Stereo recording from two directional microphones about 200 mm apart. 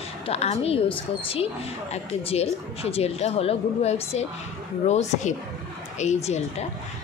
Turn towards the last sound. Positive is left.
turn(degrees=35)  # may be behind; listen again after turning